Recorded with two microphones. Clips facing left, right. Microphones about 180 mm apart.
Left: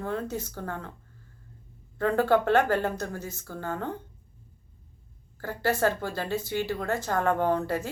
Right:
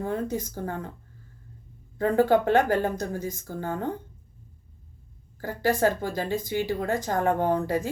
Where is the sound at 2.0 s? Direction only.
15° right (ahead or behind).